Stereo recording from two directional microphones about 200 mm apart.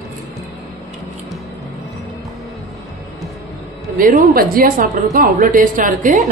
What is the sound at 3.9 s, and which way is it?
A woman's voice, 45° right (ahead or behind).